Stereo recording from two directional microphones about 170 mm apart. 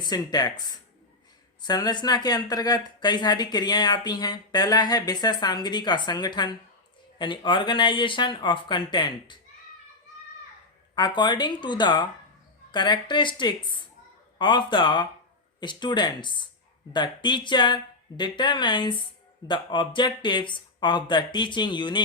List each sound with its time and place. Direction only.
0.0 s speech: 25° left (ahead or behind)
10.9 s speech: 25° left (ahead or behind)